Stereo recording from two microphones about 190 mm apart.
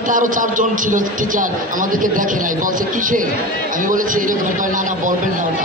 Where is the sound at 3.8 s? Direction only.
45° right (ahead or behind).